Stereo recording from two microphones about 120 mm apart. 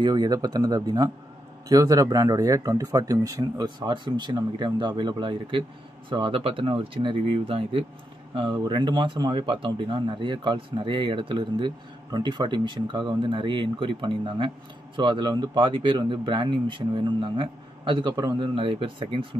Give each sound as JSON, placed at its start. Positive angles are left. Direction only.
{"t": 0.0, "sound": "speech", "side_deg": -35}